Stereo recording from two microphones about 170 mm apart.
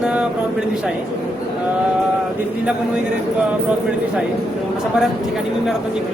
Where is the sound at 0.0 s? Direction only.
5° right (ahead or behind).